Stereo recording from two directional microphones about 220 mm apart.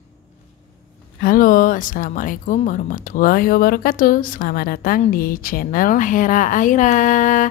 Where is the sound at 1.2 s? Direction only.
40° left (ahead or behind).